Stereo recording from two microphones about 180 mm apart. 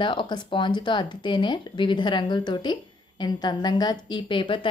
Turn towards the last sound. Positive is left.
turn(degrees=30)  # may be behind; listen again after turning